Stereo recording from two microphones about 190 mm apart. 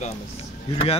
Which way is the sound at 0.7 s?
30° left (ahead or behind).